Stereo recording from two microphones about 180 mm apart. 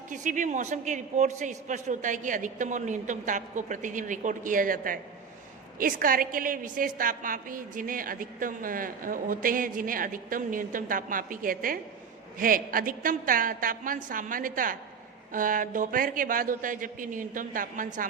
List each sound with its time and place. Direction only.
0.1 s a woman's voice: 45° right (ahead or behind)